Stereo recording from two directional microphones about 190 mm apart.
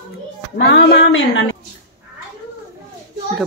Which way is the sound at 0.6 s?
65° left (ahead or behind).